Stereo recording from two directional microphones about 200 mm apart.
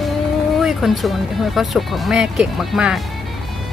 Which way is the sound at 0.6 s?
Centre (ahead or behind).